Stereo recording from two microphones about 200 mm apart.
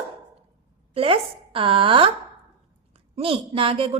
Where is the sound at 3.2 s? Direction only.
30° right (ahead or behind).